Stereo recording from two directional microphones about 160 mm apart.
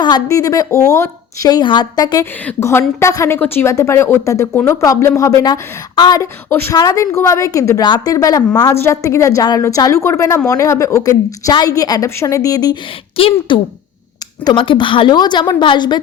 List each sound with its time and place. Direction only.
0.0 s a woman's voice: 25° left (ahead or behind)
2.4 s a woman's voice: 15° left (ahead or behind)
6.5 s a woman's voice: 15° left (ahead or behind)
13.1 s a woman's voice: 35° left (ahead or behind)